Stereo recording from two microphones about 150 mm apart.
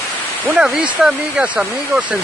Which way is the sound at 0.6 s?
5° right (ahead or behind).